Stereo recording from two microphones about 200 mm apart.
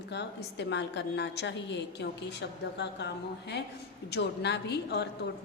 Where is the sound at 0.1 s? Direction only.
60° left (ahead or behind).